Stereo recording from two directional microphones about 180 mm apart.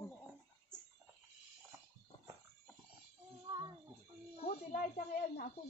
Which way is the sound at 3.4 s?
25° right (ahead or behind).